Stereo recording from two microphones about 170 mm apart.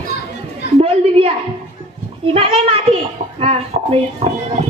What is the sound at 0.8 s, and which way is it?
Speech, 35° right (ahead or behind).